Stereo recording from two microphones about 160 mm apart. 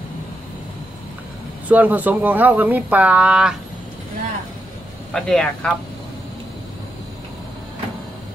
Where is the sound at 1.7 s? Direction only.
10° right (ahead or behind).